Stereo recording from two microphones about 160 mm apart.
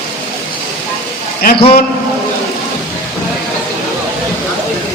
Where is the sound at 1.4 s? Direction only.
70° left (ahead or behind).